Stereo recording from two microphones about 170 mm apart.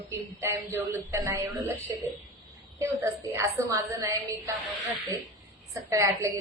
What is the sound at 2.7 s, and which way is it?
A woman's voice, 15° right (ahead or behind).